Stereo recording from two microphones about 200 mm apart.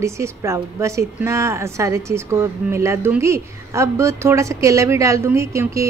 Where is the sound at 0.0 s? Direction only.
15° right (ahead or behind).